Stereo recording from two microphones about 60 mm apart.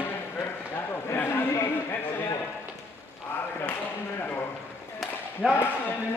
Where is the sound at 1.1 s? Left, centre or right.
Left.